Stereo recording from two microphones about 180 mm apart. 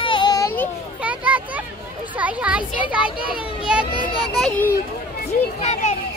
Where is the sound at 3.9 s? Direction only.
30° left (ahead or behind).